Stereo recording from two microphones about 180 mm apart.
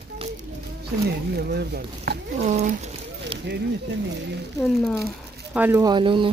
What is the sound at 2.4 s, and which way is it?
Speech, 40° right (ahead or behind).